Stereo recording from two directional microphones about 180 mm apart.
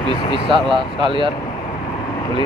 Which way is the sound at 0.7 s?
25° right (ahead or behind).